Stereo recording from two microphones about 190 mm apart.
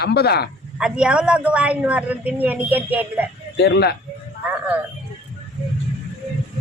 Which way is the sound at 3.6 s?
60° left (ahead or behind).